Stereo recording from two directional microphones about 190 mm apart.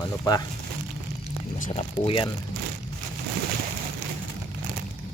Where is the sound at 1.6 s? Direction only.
35° left (ahead or behind).